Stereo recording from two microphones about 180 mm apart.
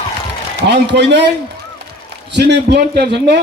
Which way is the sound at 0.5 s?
70° right (ahead or behind).